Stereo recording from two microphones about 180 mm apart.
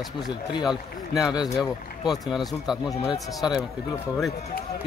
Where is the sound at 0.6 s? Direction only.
Centre (ahead or behind).